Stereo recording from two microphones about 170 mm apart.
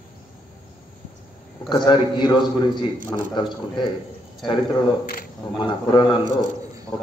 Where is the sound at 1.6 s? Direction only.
25° left (ahead or behind).